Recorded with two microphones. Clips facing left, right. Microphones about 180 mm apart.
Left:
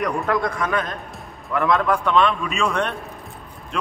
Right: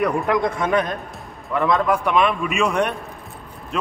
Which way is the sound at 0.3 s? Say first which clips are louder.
Right 3 dB; 20° right (ahead or behind).